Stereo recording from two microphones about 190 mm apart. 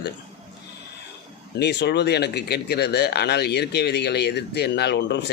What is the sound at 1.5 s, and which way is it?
Speech, 60° left (ahead or behind).